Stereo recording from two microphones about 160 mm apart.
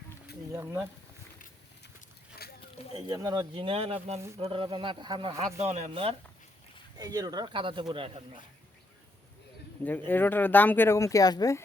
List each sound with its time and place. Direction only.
0.5 s speech: 15° right (ahead or behind)
2.4 s a sound: 75° left (ahead or behind)
3.1 s speech: 25° right (ahead or behind)
5.5 s speech: 40° right (ahead or behind)
6.9 s speech: 25° right (ahead or behind)
9.8 s speech: 10° left (ahead or behind)